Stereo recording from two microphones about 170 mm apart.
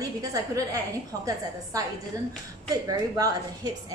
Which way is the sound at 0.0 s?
20° right (ahead or behind).